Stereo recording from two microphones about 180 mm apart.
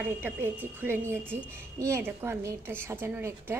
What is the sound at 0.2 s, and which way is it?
A woman's voice, 10° right (ahead or behind).